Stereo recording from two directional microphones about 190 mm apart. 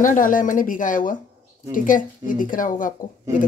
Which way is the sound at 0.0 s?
45° left (ahead or behind).